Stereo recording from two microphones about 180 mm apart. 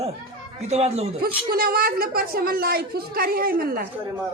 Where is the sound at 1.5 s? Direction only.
55° right (ahead or behind).